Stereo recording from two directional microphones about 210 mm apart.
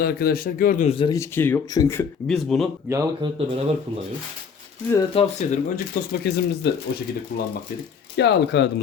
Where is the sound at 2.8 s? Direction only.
15° right (ahead or behind).